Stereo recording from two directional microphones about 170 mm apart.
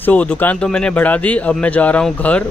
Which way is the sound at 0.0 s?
10° left (ahead or behind).